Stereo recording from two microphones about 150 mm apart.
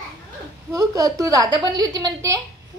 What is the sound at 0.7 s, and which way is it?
A woman's voice, 20° right (ahead or behind).